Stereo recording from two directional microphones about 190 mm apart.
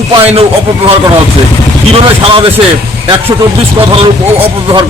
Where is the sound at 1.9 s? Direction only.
30° right (ahead or behind).